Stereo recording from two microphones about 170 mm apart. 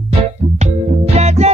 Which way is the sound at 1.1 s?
40° right (ahead or behind).